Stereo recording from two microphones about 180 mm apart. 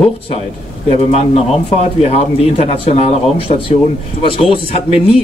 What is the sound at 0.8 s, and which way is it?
Speech, 35° left (ahead or behind).